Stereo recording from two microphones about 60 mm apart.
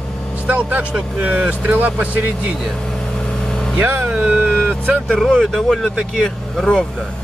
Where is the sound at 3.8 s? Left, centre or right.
Right.